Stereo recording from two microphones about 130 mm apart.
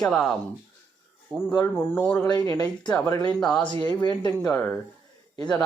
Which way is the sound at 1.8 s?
15° left (ahead or behind).